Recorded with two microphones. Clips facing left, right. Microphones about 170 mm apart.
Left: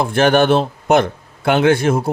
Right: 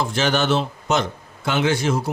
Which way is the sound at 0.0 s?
55° left (ahead or behind).